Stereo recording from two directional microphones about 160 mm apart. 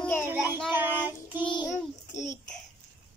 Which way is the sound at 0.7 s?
10° right (ahead or behind).